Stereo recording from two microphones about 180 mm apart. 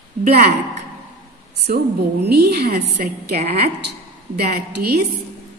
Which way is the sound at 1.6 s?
65° right (ahead or behind).